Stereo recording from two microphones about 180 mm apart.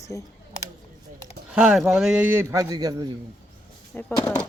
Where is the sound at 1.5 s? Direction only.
5° right (ahead or behind); by 3.0 s 20° right (ahead or behind).